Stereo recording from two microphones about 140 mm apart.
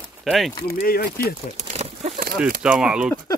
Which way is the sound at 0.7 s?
90° left.